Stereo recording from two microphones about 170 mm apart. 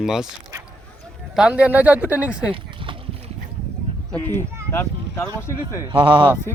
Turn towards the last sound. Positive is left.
turn(degrees=-30)  # may be behind; listen again after turning